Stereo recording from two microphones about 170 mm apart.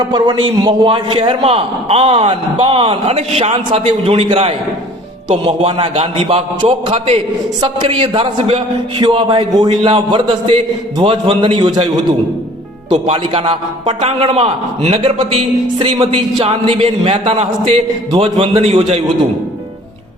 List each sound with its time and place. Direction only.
0.0 s a man's voice: 25° right (ahead or behind)
12.9 s a man's voice: 30° right (ahead or behind)